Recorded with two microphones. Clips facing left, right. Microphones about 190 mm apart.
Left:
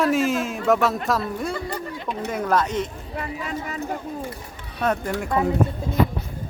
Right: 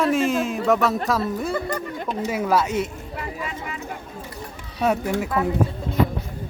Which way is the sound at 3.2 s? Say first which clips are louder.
Left 3 dB; 40° left (ahead or behind).